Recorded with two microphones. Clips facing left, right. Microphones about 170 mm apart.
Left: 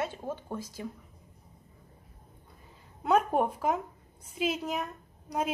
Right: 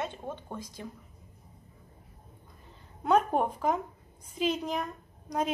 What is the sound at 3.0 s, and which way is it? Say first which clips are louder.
A woman's voice: even; 5° left (ahead or behind).